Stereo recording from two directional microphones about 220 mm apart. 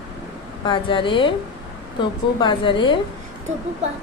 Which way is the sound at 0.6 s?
20° left (ahead or behind).